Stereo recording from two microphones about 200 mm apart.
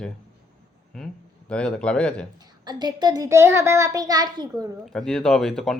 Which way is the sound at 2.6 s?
20° right (ahead or behind).